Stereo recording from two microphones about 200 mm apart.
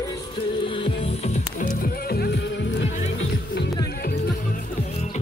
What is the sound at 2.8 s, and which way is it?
Music, 65° left (ahead or behind).